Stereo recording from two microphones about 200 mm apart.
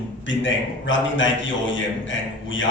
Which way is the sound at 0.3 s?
70° left (ahead or behind).